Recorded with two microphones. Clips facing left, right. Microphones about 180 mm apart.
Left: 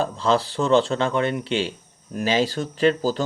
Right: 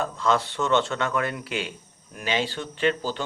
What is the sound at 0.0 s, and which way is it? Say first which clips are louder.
Speech: left 3 dB; 30° left (ahead or behind).